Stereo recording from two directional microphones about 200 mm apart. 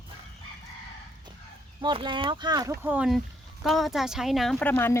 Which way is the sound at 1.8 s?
25° right (ahead or behind).